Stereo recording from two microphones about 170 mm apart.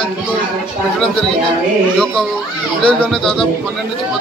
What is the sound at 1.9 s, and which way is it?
A man's voice, 5° left (ahead or behind).